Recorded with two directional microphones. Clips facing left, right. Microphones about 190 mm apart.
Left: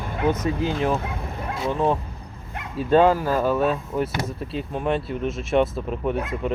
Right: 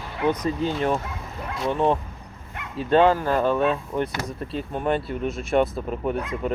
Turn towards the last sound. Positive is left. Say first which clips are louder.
# left 1 dB
turn(degrees=0)  # may be behind; listen again after turning